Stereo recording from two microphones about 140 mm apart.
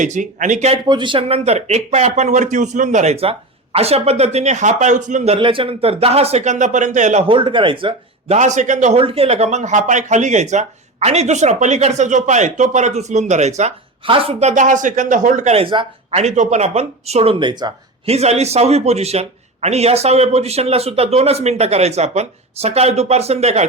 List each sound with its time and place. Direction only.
0.0 s speech: 60° right (ahead or behind)
0.9 s speech: 35° right (ahead or behind)
1.5 s speech: 55° right (ahead or behind)
7.3 s speech: 35° right (ahead or behind)
8.4 s speech: 60° right (ahead or behind)
14.0 s speech: 40° right (ahead or behind); by 15.6 s 55° right (ahead or behind)
15.6 s speech: 35° right (ahead or behind)
16.2 s speech: 55° right (ahead or behind)
17.4 s speech: 30° right (ahead or behind)
18.0 s speech: 50° right (ahead or behind)